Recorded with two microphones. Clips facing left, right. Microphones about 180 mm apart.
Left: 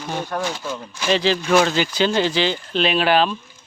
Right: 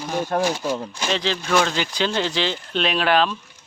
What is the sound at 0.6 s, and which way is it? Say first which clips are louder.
Speech: right 4 dB; 35° right (ahead or behind).